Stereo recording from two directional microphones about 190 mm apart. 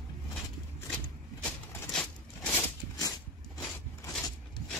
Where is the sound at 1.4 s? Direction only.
5° left (ahead or behind).